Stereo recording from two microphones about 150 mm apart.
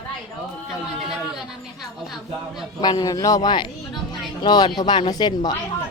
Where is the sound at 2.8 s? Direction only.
30° left (ahead or behind).